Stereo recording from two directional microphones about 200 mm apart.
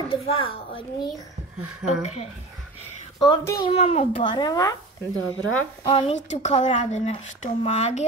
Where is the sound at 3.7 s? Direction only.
30° left (ahead or behind).